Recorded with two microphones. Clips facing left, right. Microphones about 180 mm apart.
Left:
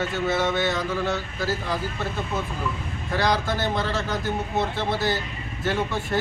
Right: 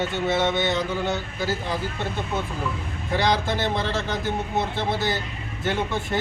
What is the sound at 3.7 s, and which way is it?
Speech, centre (ahead or behind).